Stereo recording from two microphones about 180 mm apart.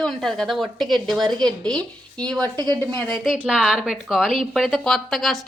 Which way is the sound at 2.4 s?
20° right (ahead or behind).